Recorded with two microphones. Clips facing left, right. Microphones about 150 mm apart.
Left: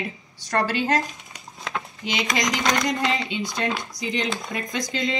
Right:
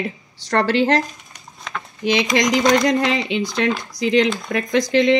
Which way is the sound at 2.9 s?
90° right.